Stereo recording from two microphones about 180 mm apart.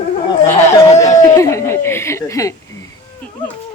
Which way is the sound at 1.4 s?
15° left (ahead or behind).